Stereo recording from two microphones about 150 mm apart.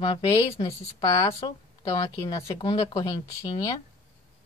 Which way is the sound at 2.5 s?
30° left (ahead or behind).